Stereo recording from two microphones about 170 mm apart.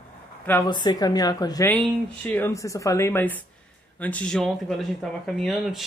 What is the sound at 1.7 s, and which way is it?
Speech, 10° left (ahead or behind).